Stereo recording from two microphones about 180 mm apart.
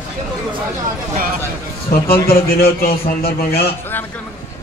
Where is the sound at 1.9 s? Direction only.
55° left (ahead or behind).